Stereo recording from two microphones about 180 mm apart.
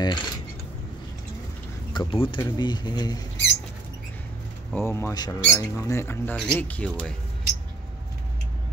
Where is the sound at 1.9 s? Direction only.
25° left (ahead or behind).